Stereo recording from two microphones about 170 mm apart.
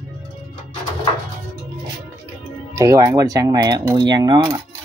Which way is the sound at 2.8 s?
15° right (ahead or behind).